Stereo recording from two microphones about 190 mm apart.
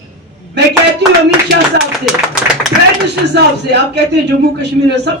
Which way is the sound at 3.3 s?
60° right (ahead or behind).